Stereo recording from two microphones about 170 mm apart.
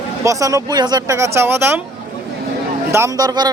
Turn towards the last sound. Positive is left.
turn(degrees=-25)  # may be behind; listen again after turning